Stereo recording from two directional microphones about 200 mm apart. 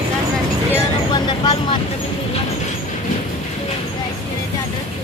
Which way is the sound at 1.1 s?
20° left (ahead or behind).